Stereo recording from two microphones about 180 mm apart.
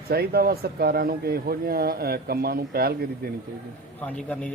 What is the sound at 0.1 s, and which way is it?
Speech, 60° right (ahead or behind).